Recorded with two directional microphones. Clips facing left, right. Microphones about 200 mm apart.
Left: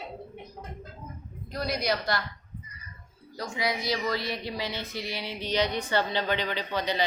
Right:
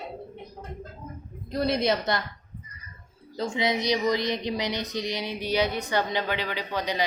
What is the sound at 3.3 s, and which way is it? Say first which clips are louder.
Speech: right 5 dB; 25° right (ahead or behind).